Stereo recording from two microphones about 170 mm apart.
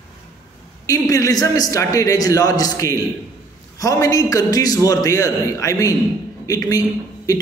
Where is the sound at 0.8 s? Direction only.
20° left (ahead or behind).